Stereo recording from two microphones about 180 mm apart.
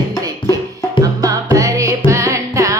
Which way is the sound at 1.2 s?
20° right (ahead or behind).